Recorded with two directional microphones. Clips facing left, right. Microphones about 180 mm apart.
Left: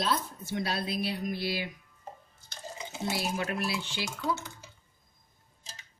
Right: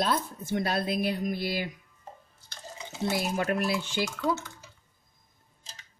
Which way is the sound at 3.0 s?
50° right (ahead or behind).